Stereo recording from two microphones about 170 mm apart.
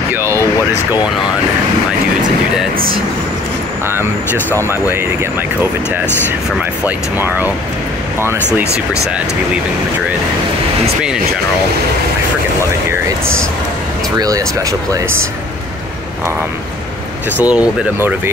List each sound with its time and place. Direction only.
0.1 s a sound: 15° right (ahead or behind)
3.8 s speech: 15° right (ahead or behind)
6.8 s speech: 10° right (ahead or behind)
14.1 s speech: 20° right (ahead or behind)
17.4 s speech: 10° right (ahead or behind)